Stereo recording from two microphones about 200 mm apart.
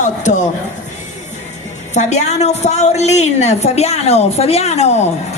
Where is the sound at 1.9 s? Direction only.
35° left (ahead or behind).